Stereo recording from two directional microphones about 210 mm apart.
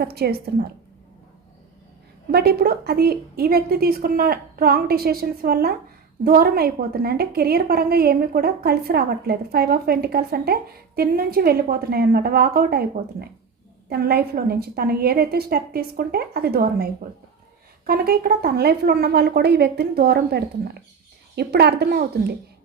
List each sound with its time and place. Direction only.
0.0 s a woman's voice: 50° right (ahead or behind)
2.3 s a woman's voice: 50° right (ahead or behind)